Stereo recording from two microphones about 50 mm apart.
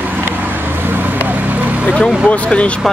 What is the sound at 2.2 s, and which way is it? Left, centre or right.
Speech, left.